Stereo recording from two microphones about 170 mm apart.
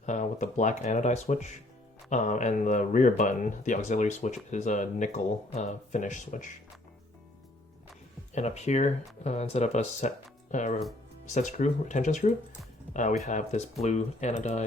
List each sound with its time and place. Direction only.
0.0 s speech: 45° left (ahead or behind)
8.4 s speech: 40° left (ahead or behind)